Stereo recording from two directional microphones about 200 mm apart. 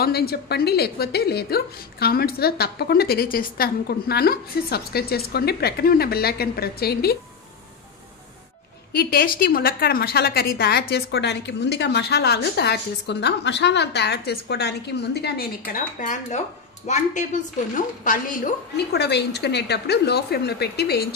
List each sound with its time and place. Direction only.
0.0 s a woman's voice: 50° left (ahead or behind)
8.9 s a woman's voice: 45° left (ahead or behind)